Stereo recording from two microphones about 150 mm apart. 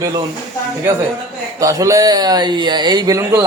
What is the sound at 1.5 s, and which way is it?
Speech, 20° right (ahead or behind).